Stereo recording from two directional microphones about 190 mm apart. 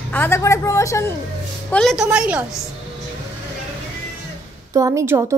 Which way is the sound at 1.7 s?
Centre (ahead or behind).